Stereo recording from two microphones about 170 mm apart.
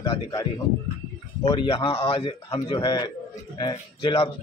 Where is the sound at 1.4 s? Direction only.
30° left (ahead or behind).